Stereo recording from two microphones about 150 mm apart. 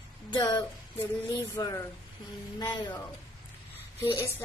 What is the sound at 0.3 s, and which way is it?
A woman's voice, 30° left (ahead or behind).